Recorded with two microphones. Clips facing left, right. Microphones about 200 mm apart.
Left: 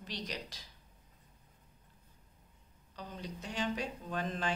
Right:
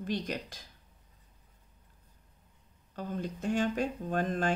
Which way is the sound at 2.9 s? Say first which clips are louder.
Right 8 dB; 50° right (ahead or behind).